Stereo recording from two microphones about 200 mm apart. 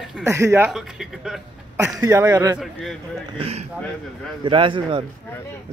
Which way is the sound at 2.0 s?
15° right (ahead or behind).